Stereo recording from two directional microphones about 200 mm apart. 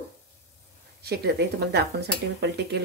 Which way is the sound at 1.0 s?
55° right (ahead or behind).